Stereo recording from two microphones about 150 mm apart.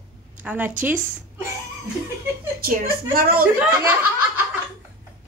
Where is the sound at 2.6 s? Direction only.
75° right (ahead or behind).